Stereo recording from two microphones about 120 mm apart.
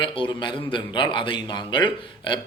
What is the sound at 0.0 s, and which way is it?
A man's voice, 45° left (ahead or behind).